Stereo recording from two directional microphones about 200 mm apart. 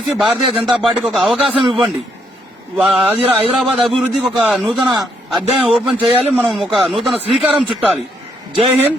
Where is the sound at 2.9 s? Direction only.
30° right (ahead or behind).